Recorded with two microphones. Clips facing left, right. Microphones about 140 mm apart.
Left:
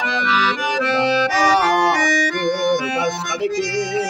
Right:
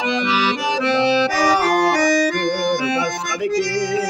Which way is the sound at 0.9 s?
25° right (ahead or behind).